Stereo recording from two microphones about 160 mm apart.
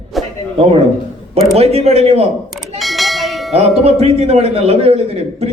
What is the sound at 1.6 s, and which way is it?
Speech, 40° right (ahead or behind).